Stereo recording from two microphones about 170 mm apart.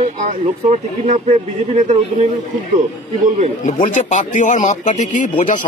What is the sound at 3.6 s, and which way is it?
Speech, 50° left (ahead or behind).